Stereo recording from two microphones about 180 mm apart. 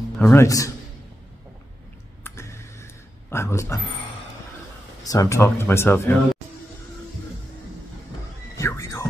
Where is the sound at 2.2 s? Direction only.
15° left (ahead or behind).